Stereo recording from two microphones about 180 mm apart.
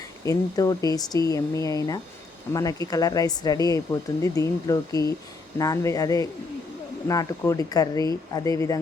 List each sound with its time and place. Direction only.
0.3 s speech: 20° left (ahead or behind)